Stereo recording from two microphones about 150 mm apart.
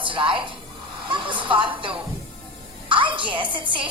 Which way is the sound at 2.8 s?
35° right (ahead or behind).